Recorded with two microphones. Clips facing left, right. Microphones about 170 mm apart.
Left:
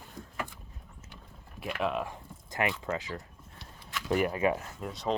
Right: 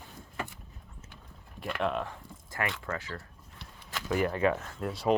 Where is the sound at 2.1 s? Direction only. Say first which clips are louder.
Left 2 dB; 15° left (ahead or behind).